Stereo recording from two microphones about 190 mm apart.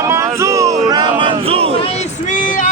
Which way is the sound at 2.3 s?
45° left (ahead or behind).